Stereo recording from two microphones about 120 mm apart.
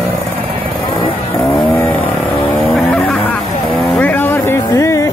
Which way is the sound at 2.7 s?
5° left (ahead or behind).